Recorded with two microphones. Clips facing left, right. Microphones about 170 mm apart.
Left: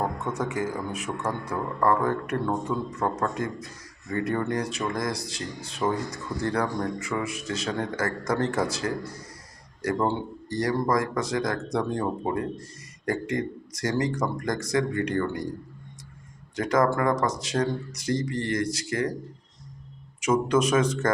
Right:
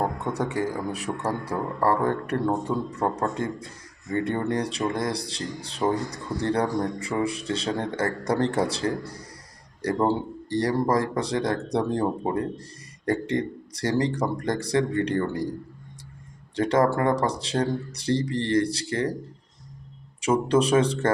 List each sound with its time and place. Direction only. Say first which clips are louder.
0.3 s speech: right 2 dB; 35° right (ahead or behind)
16.6 s speech: right 2 dB; 30° right (ahead or behind)
20.2 s speech: right 1 dB; 30° right (ahead or behind)